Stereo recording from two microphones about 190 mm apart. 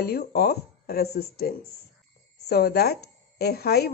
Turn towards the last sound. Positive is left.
turn(degrees=55)  # may be behind; listen again after turning